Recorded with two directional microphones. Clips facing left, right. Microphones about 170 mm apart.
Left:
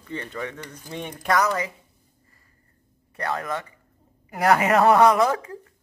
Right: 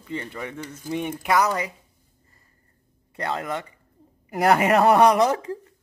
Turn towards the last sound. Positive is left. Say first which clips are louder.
# even
turn(degrees=-20)  # may be behind; listen again after turning